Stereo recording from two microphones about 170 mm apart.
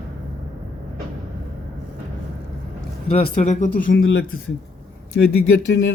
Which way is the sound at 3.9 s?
90° left.